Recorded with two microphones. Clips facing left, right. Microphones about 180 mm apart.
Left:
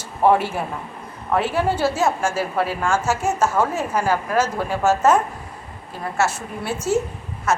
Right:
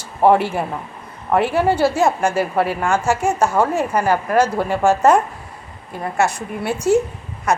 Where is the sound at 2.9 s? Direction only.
15° right (ahead or behind).